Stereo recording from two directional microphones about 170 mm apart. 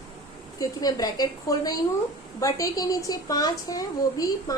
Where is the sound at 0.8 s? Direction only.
20° left (ahead or behind).